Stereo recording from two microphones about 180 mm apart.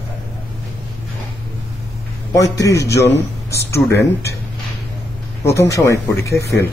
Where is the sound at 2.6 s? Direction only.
15° left (ahead or behind).